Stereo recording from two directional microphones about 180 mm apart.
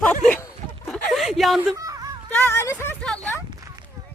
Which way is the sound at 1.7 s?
20° right (ahead or behind).